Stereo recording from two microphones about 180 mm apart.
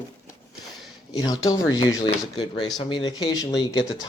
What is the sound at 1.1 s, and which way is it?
Speech, 25° left (ahead or behind).